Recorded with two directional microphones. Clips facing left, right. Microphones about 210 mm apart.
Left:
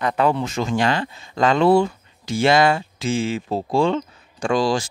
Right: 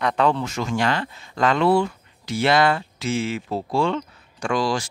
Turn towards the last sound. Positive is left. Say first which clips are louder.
# left 3 dB
turn(degrees=30)  # may be behind; listen again after turning